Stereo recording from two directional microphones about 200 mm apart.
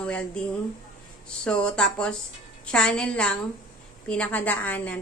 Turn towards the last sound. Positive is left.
turn(degrees=10)  # may be behind; listen again after turning